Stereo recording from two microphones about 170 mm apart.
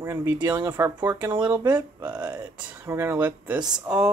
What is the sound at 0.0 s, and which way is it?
Speech, 15° right (ahead or behind).